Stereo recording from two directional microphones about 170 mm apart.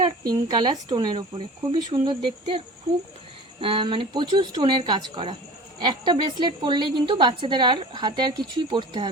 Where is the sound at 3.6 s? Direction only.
30° right (ahead or behind).